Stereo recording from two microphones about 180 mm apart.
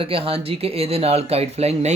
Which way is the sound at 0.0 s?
30° right (ahead or behind).